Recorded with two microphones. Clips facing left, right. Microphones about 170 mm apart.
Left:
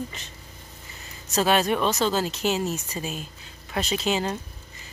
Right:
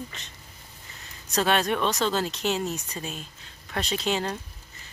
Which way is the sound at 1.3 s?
5° left (ahead or behind).